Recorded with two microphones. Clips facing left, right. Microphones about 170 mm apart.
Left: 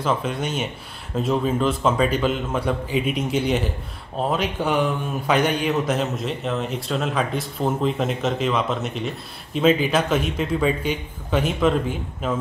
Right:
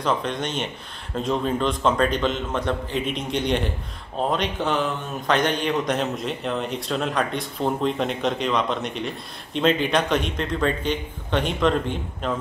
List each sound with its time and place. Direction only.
0.0 s a man's voice: 5° left (ahead or behind)